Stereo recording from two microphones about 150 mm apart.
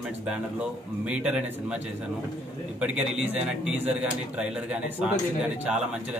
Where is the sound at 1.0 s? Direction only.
5° right (ahead or behind).